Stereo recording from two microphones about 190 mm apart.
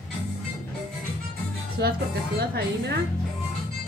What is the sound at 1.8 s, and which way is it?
Speech, 60° right (ahead or behind).